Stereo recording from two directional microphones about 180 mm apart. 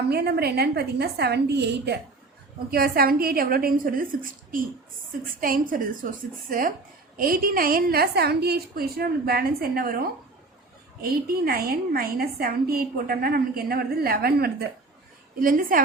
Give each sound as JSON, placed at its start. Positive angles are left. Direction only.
{"t": 0.1, "sound": "a woman's voice", "side_deg": -60}
{"t": 2.6, "sound": "a woman's voice", "side_deg": -55}
{"t": 11.0, "sound": "a woman's voice", "side_deg": -55}